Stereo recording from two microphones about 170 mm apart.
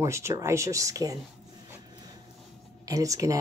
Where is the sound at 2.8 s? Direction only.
20° right (ahead or behind).